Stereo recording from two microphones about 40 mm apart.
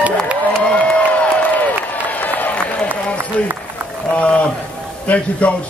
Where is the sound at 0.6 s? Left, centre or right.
Left.